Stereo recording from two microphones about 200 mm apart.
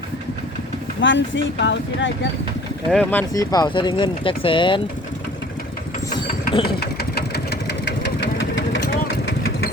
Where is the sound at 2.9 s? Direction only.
10° left (ahead or behind); by 4.8 s 25° left (ahead or behind).